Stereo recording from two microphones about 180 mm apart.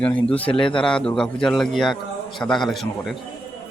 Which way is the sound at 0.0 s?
5° left (ahead or behind).